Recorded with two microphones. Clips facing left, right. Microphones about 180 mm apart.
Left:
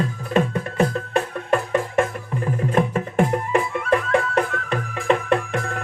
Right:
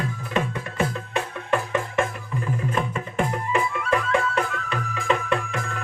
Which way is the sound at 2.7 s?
55° left (ahead or behind).